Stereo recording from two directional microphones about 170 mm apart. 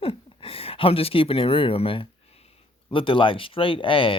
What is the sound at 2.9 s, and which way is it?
Speech, 30° left (ahead or behind).